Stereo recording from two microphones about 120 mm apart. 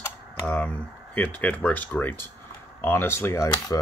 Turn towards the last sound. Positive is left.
turn(degrees=25)  # may be behind; listen again after turning